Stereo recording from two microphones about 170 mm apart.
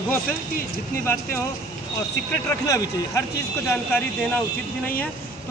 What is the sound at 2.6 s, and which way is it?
Speech, 20° left (ahead or behind).